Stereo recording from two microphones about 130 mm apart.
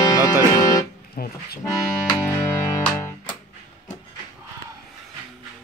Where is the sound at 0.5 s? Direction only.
30° left (ahead or behind).